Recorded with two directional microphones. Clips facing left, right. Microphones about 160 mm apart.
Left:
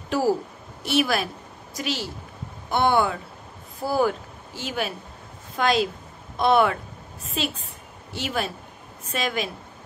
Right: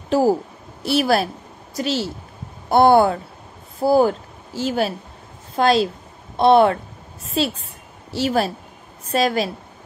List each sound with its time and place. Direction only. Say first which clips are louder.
0.1 s a woman's voice: right 5 dB; 25° right (ahead or behind)